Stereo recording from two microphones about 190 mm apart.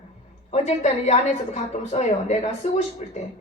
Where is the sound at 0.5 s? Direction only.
35° left (ahead or behind).